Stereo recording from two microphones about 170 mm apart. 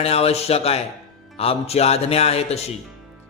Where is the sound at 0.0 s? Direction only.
35° left (ahead or behind).